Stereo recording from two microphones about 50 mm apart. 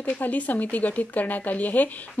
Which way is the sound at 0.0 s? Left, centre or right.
Left.